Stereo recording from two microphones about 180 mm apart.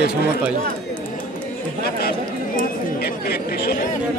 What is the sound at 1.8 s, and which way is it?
Chatter, 60° left (ahead or behind).